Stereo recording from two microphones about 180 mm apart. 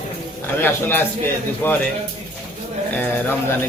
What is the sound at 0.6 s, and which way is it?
A man's voice, 10° left (ahead or behind).